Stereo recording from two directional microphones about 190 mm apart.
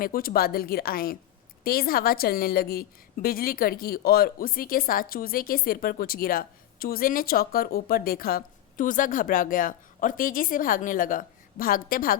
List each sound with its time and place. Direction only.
0.0 s a woman's voice: 50° left (ahead or behind)